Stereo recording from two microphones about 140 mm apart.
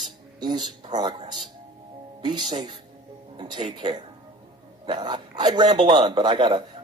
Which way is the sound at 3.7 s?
30° right (ahead or behind).